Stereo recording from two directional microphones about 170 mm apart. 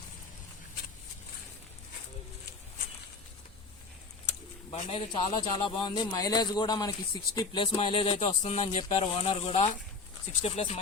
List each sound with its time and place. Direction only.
4.7 s a man's voice: 35° left (ahead or behind)